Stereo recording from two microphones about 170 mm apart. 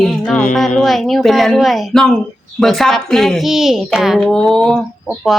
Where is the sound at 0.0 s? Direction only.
5° left (ahead or behind).